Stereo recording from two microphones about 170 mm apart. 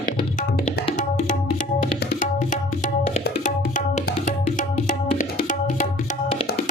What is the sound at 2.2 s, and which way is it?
Tabla, 50° left (ahead or behind).